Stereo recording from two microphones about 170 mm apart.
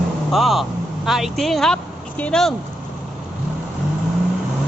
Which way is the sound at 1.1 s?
Centre (ahead or behind).